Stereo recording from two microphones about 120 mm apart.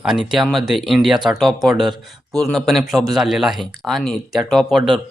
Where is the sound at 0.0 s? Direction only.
5° right (ahead or behind).